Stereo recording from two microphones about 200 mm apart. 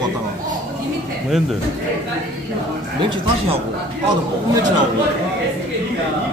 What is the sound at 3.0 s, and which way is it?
Speech, 25° right (ahead or behind).